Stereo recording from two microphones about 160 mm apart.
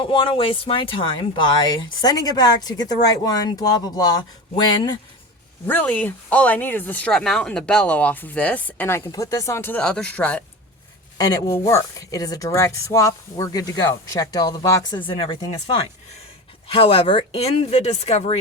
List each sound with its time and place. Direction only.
0.0 s speech: 30° left (ahead or behind)
5.6 s speech: 10° left (ahead or behind)
11.2 s speech: 20° left (ahead or behind); by 18.3 s 40° left (ahead or behind)